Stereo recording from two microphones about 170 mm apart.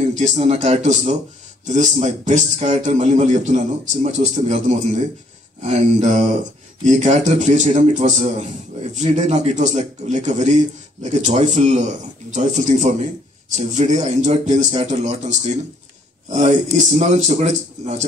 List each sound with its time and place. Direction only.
0.0 s a man's voice: 40° right (ahead or behind)